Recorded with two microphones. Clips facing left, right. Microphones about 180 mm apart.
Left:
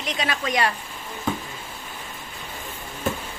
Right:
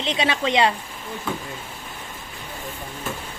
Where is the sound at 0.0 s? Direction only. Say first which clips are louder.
Right 4 dB; 30° right (ahead or behind).